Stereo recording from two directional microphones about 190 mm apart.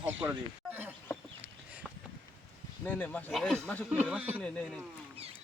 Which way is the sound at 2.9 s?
10° left (ahead or behind).